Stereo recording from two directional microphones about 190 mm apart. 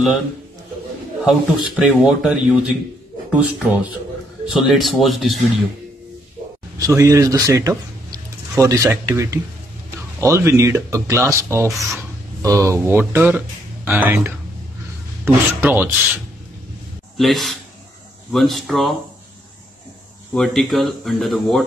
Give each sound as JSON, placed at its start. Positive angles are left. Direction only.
{"t": 1.2, "sound": "speech", "side_deg": 0}
{"t": 6.8, "sound": "speech", "side_deg": -15}
{"t": 13.8, "sound": "rub", "side_deg": -10}
{"t": 17.2, "sound": "speech", "side_deg": 0}
{"t": 20.3, "sound": "speech", "side_deg": 0}